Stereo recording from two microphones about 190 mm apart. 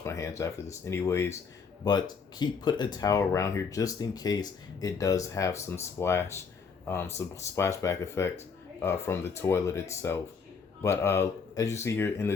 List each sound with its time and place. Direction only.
0.0 s speech: 15° left (ahead or behind)